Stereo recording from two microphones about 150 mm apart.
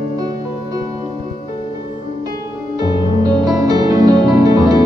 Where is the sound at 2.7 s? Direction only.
25° right (ahead or behind).